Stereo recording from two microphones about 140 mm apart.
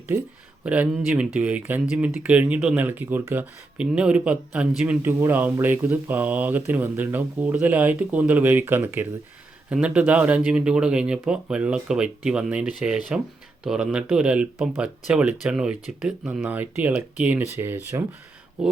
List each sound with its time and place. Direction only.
0.6 s speech: 10° right (ahead or behind)
18.6 s speech: 5° right (ahead or behind)